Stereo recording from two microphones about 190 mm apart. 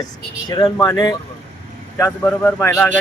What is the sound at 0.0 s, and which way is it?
A man's voice, 20° left (ahead or behind).